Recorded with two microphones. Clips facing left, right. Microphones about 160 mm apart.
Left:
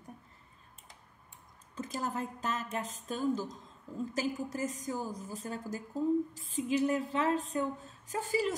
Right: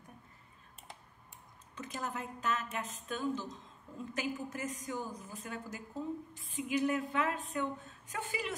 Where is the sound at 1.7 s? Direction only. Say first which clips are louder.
Left 4 dB; 35° left (ahead or behind).